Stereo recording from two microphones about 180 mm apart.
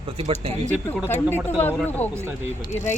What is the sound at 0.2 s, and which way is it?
Speech, 35° right (ahead or behind).